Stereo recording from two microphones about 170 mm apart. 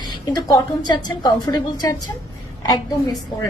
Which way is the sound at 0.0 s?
25° left (ahead or behind).